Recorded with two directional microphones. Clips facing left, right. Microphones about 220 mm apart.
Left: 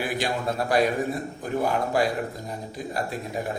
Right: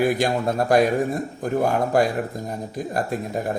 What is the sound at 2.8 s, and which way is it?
Speech, 45° right (ahead or behind).